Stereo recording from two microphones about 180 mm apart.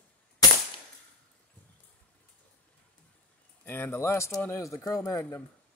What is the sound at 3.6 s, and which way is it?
Speech, 10° left (ahead or behind).